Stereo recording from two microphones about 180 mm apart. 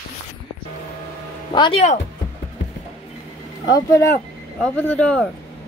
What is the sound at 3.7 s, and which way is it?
Speech, 20° left (ahead or behind).